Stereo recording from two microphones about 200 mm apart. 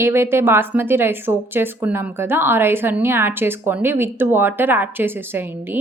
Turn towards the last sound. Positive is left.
turn(degrees=-10)  # may be behind; listen again after turning